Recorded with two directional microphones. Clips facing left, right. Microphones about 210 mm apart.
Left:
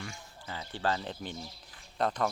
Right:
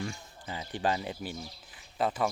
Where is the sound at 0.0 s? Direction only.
25° right (ahead or behind).